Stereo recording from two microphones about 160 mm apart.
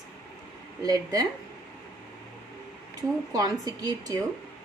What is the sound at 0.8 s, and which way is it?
Speech, 25° right (ahead or behind).